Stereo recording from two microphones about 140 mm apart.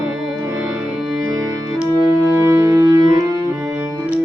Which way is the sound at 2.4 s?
20° right (ahead or behind).